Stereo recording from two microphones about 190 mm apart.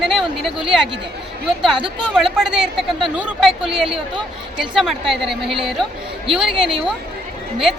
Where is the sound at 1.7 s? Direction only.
25° right (ahead or behind).